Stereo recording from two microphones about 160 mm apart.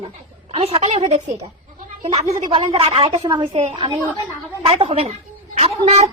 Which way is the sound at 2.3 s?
30° right (ahead or behind).